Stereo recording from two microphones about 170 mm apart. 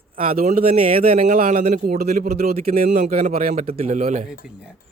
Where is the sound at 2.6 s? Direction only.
40° right (ahead or behind).